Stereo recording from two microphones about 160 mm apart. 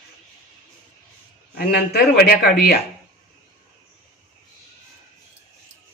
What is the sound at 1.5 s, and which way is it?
Speech, 75° left (ahead or behind).